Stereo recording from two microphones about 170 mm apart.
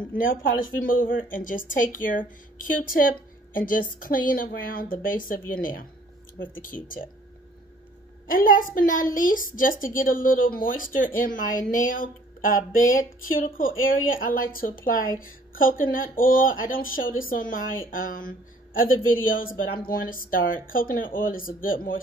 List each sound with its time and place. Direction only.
0.1 s speech: 55° left (ahead or behind)
8.3 s a man's voice: 55° left (ahead or behind)